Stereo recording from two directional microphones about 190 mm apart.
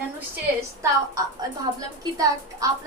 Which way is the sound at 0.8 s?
15° right (ahead or behind).